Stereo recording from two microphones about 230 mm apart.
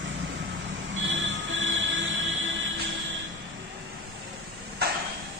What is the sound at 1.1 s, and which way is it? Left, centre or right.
Music, right.